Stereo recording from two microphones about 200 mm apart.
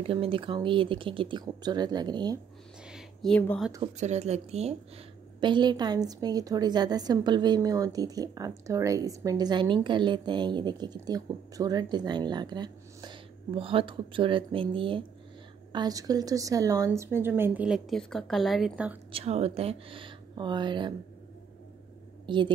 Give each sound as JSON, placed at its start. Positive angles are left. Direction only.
{"t": 0.0, "sound": "a woman's voice", "side_deg": -25}
{"t": 2.9, "sound": "a sound", "side_deg": 5}
{"t": 4.0, "sound": "a woman's voice", "side_deg": -35}
{"t": 19.1, "sound": "a woman's voice", "side_deg": -30}
{"t": 22.2, "sound": "a woman's voice", "side_deg": -25}